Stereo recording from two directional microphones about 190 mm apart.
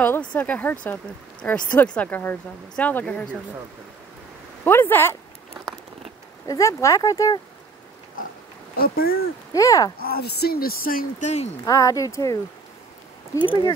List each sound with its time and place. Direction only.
0.0 s speech: 10° left (ahead or behind)
4.6 s speech: 10° left (ahead or behind)
6.4 s speech: 15° left (ahead or behind)
8.7 s speech: 55° left (ahead or behind)
9.5 s speech: 20° left (ahead or behind)
9.9 s speech: 55° left (ahead or behind)
11.6 s speech: 20° left (ahead or behind)